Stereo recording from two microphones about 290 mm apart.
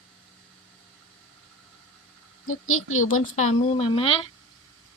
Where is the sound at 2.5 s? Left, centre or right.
Left.